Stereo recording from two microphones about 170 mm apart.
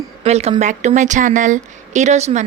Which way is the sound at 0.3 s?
40° right (ahead or behind).